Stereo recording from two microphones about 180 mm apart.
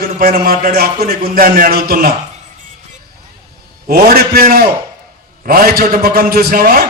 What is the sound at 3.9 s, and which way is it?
A man's voice, 55° right (ahead or behind).